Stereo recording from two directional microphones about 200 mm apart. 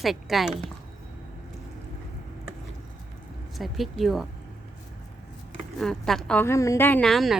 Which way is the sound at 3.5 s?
Centre (ahead or behind).